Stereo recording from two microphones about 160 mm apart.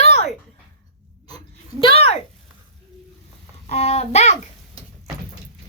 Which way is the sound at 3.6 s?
40° left (ahead or behind).